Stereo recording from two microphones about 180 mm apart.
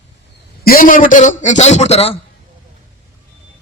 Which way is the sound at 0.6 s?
50° left (ahead or behind).